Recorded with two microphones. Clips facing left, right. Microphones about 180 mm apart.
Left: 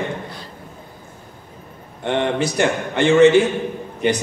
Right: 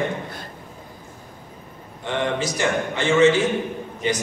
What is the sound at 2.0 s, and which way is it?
A man's voice, 60° left (ahead or behind).